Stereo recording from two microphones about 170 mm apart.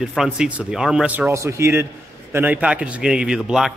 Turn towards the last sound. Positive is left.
turn(degrees=-5)  # may be behind; listen again after turning